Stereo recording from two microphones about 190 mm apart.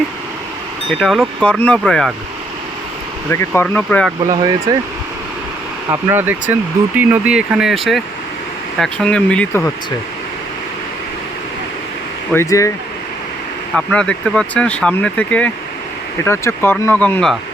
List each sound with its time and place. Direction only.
0.9 s speech: centre (ahead or behind)
3.3 s speech: 10° left (ahead or behind)
4.3 s speech: 20° right (ahead or behind)
5.9 s speech: 10° right (ahead or behind); by 9.6 s 10° left (ahead or behind)
12.3 s speech: 15° left (ahead or behind)
13.7 s speech: 5° left (ahead or behind)